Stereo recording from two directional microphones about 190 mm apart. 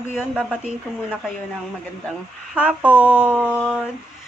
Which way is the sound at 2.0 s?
5° right (ahead or behind).